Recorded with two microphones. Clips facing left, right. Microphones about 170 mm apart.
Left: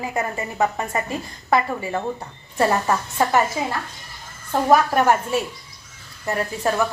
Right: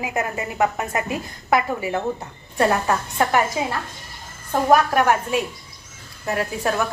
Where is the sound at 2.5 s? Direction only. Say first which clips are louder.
Even; centre (ahead or behind).